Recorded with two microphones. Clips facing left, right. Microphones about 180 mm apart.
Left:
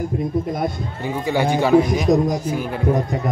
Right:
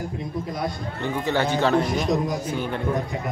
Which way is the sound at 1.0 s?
10° left (ahead or behind).